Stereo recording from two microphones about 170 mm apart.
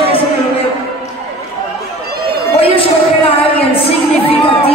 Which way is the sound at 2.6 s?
35° left (ahead or behind).